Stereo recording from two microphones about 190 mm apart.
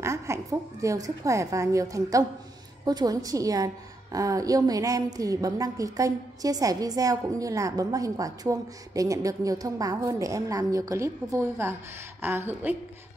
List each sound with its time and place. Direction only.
0.0 s a woman's voice: 15° right (ahead or behind)